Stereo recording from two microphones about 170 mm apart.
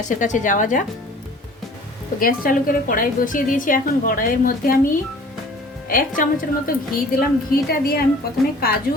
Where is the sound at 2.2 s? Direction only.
55° left (ahead or behind).